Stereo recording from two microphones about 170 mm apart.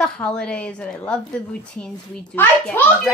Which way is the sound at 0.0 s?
5° left (ahead or behind).